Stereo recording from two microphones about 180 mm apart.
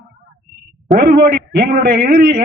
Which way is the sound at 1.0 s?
60° right (ahead or behind).